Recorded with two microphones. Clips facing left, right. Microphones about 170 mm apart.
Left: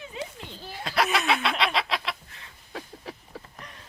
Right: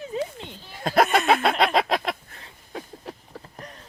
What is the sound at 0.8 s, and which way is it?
Laughter, 45° right (ahead or behind).